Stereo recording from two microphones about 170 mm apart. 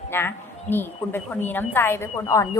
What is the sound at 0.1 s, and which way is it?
A woman's voice, 15° left (ahead or behind).